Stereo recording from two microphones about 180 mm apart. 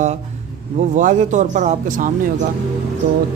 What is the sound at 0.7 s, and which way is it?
Speech, 45° right (ahead or behind).